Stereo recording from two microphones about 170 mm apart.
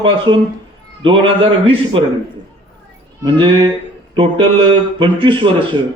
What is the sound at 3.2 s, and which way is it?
Speech, 25° right (ahead or behind).